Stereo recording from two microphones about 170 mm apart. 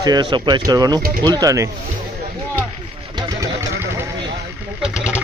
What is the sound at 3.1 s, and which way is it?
Vehicle, 20° right (ahead or behind).